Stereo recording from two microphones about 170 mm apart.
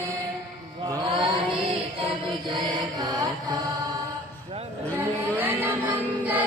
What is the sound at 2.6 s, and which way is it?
Chant, 20° right (ahead or behind).